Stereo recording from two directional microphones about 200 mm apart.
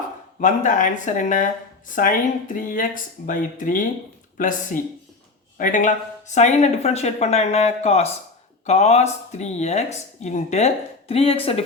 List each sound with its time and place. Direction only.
0.3 s speech: 40° left (ahead or behind)